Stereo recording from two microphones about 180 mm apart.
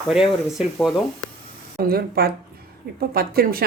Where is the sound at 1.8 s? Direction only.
55° right (ahead or behind).